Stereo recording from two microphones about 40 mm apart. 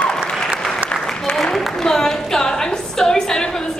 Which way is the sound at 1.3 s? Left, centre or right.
Centre.